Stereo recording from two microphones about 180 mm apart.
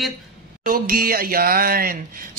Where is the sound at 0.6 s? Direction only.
55° right (ahead or behind).